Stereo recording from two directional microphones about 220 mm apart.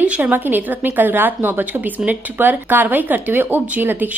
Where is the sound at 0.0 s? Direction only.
5° right (ahead or behind).